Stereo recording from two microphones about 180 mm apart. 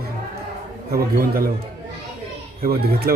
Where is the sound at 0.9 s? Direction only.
55° right (ahead or behind).